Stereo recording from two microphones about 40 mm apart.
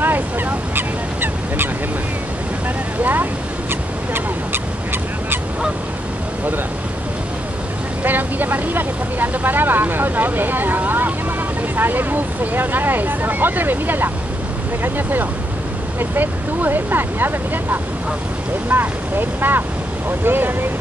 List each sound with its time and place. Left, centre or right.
0.0 s honk: right
3.0 s speech: right
4.1 s duck: right
8.0 s speech: right